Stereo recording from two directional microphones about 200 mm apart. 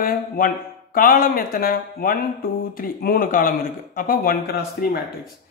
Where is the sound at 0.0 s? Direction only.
45° left (ahead or behind).